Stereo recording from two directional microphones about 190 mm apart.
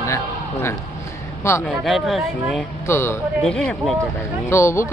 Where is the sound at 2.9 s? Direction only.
15° left (ahead or behind).